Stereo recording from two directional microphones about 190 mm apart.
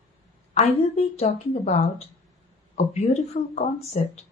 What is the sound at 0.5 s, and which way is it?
Speech, 35° left (ahead or behind).